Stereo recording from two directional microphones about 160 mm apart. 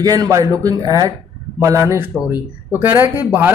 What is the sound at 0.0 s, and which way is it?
Speech, 25° right (ahead or behind).